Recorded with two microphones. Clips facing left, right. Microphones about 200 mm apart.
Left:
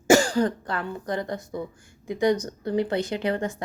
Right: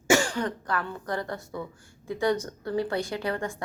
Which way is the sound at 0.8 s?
20° left (ahead or behind).